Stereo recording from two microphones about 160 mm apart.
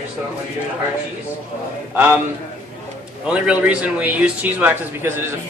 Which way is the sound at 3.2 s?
5° right (ahead or behind).